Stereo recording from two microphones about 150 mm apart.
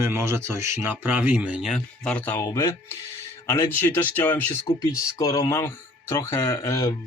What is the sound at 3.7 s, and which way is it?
Speech, 15° left (ahead or behind).